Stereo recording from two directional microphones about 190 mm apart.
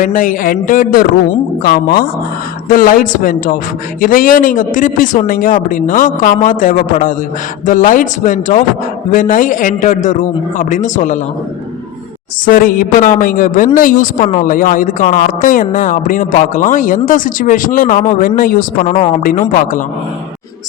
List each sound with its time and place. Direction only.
0.0 s speech: 45° left (ahead or behind)
12.5 s speech: 50° left (ahead or behind)